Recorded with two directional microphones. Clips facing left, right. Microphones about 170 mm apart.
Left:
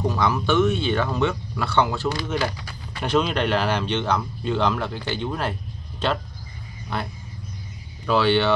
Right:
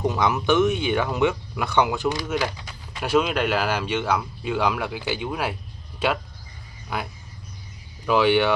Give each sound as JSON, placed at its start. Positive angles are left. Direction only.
{"t": 0.0, "sound": "speech", "side_deg": -20}
{"t": 8.1, "sound": "speech", "side_deg": -15}